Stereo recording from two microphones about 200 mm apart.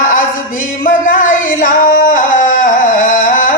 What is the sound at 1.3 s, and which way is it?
Singing, 45° left (ahead or behind).